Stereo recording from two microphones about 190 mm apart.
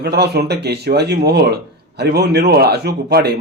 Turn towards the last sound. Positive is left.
turn(degrees=-60)  # may be behind; listen again after turning